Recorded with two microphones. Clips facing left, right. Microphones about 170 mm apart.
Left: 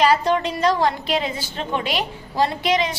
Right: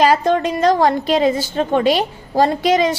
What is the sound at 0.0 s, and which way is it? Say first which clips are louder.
A woman's voice: right 4 dB; 45° right (ahead or behind).